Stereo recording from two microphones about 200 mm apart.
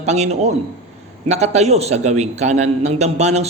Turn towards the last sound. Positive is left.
turn(degrees=-35)  # may be behind; listen again after turning